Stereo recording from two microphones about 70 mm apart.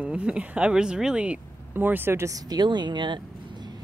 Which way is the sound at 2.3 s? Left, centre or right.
Right.